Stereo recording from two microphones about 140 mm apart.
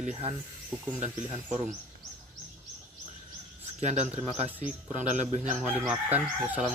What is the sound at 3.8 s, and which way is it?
A man's voice, 55° right (ahead or behind).